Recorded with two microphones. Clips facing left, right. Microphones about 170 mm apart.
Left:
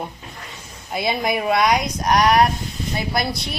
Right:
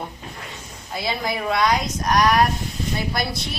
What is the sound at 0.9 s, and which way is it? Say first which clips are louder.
Speech: left 4 dB; 20° left (ahead or behind).